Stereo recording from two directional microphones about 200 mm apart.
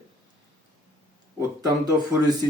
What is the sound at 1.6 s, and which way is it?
Speech, 20° right (ahead or behind).